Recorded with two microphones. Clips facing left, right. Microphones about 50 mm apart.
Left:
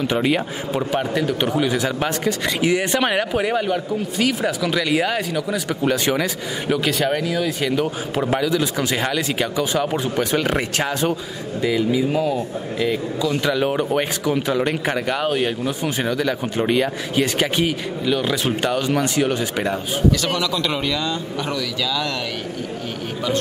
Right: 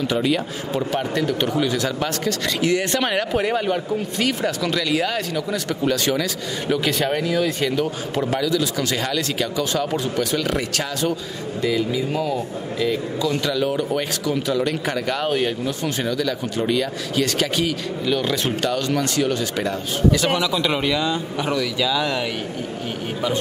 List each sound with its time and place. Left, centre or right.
0.1 s speech: left
0.9 s speech: centre
6.7 s speech: centre
10.3 s speech: left
11.6 s speech: centre
13.5 s speech: left
18.0 s speech: centre
20.1 s speech: centre